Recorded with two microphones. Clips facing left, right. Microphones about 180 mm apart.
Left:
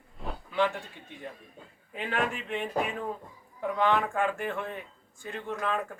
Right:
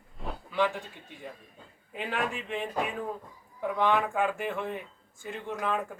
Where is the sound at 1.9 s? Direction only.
5° right (ahead or behind).